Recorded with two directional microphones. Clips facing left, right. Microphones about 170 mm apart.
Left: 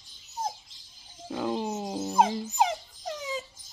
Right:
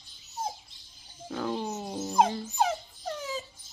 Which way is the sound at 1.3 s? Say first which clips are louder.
Left 2 dB; 15° left (ahead or behind).